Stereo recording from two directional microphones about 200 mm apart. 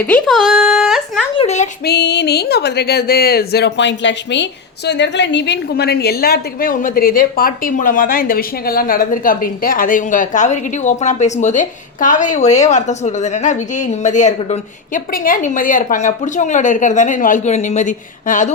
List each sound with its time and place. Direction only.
0.0 s speech: 5° left (ahead or behind)
1.4 s a woman's voice: 35° left (ahead or behind)
1.8 s a woman's voice: 55° left (ahead or behind); by 18.5 s 40° left (ahead or behind)